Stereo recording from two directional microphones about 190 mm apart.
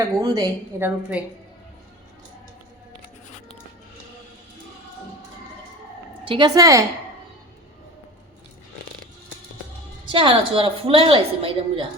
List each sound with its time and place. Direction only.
0.2 s a woman's voice: 20° right (ahead or behind)
6.2 s a woman's voice: 25° right (ahead or behind)
10.1 s a woman's voice: 25° right (ahead or behind)